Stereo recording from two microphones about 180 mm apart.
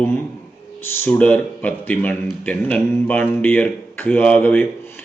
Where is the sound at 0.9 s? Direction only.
10° left (ahead or behind).